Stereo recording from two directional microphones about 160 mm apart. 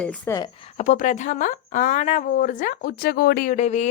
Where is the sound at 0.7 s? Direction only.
50° left (ahead or behind).